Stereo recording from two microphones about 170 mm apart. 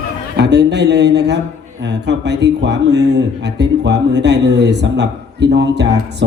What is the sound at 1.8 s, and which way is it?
Speech, 90° right.